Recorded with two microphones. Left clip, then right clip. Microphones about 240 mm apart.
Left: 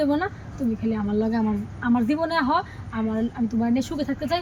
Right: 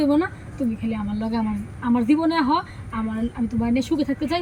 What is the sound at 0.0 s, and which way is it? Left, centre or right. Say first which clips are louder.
A man's voice: right 3 dB; centre.